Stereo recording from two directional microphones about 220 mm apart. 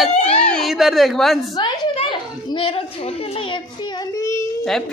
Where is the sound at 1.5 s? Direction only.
20° left (ahead or behind).